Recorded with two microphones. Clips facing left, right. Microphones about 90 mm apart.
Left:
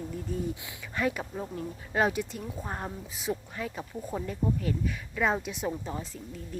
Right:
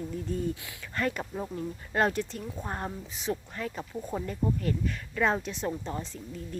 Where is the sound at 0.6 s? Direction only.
20° left (ahead or behind).